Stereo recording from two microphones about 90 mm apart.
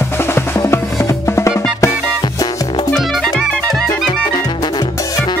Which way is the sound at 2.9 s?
Centre (ahead or behind).